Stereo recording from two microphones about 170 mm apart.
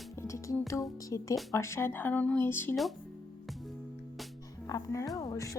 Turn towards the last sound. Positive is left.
turn(degrees=20)  # may be behind; listen again after turning